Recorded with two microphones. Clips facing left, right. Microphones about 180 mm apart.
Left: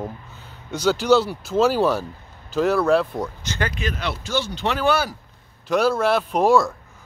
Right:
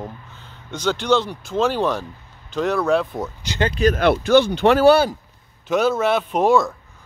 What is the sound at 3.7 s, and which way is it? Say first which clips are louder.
Speech: right 11 dB; 45° right (ahead or behind).